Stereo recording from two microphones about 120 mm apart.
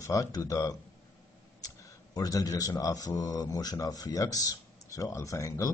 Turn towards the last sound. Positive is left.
turn(degrees=25)  # may be behind; listen again after turning